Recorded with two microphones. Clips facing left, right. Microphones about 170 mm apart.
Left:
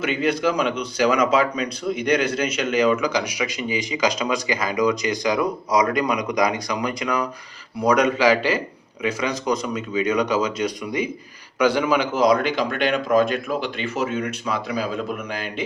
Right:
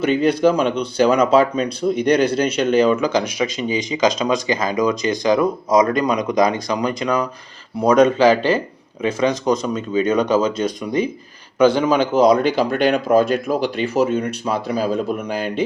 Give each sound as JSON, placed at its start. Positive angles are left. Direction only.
{"t": 0.2, "sound": "speech", "side_deg": -35}